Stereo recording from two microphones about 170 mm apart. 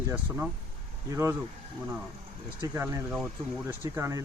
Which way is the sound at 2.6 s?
15° right (ahead or behind).